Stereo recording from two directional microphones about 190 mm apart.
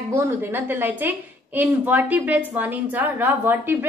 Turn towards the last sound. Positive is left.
turn(degrees=-10)  # may be behind; listen again after turning